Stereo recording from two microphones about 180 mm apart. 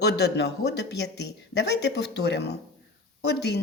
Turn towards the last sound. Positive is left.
turn(degrees=70)  # may be behind; listen again after turning